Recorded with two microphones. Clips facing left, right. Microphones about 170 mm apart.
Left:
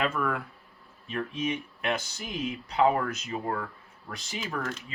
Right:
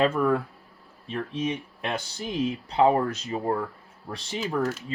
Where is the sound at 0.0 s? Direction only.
30° right (ahead or behind).